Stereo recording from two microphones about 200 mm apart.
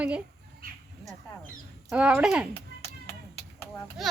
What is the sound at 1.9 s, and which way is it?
Speech, 5° right (ahead or behind).